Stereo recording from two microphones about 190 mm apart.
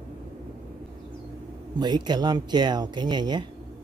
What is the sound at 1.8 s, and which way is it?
Speech, 25° right (ahead or behind).